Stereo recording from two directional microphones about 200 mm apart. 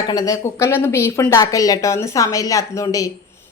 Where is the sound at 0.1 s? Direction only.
20° left (ahead or behind).